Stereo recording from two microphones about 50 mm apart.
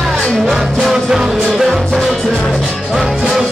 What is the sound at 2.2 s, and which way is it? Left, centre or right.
Music, centre.